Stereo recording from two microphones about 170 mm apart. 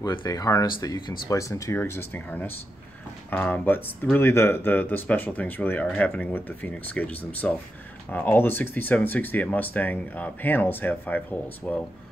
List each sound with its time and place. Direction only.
0.0 s speech: 25° left (ahead or behind)